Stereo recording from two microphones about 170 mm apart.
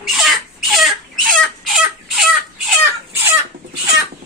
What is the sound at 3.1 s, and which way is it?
Chicken, 10° right (ahead or behind).